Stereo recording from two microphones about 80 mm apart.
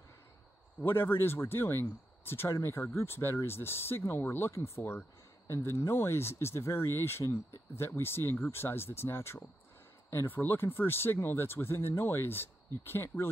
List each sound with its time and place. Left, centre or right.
0.8 s speech: left